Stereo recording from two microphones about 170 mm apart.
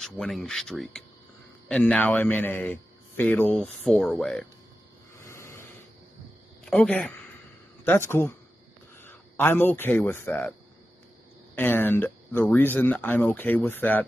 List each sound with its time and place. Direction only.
0.0 s a man's voice: centre (ahead or behind)
5.1 s a sound: 15° left (ahead or behind)
6.6 s a man's voice: 5° left (ahead or behind)
11.5 s a man's voice: 10° left (ahead or behind)